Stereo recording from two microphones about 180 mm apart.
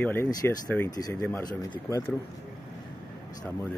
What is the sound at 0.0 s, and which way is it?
Speech, 10° left (ahead or behind).